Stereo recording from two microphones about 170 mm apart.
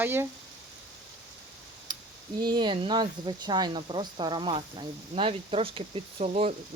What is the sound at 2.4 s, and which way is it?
Speech, 25° right (ahead or behind).